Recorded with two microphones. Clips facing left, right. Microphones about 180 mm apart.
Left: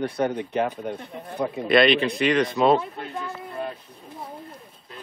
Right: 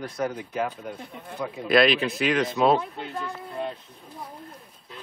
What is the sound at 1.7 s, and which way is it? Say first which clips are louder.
Speech: left 2 dB; centre (ahead or behind).